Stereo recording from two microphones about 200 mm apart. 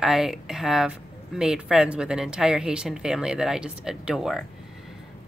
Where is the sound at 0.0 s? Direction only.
Centre (ahead or behind).